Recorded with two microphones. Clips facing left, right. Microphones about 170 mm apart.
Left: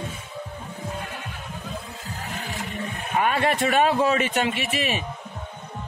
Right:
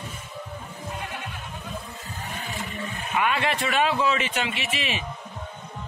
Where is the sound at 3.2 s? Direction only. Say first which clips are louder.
Left 3 dB; 45° left (ahead or behind).